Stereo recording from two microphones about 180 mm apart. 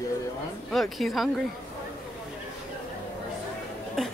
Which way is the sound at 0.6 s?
Centre (ahead or behind).